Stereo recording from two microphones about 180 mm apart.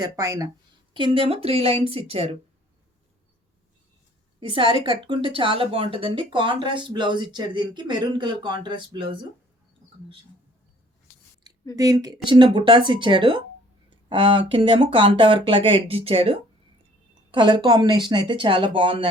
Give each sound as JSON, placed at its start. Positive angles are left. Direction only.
{"t": 0.0, "sound": "a woman's voice", "side_deg": -20}
{"t": 4.4, "sound": "speech", "side_deg": -30}
{"t": 11.8, "sound": "speech", "side_deg": -20}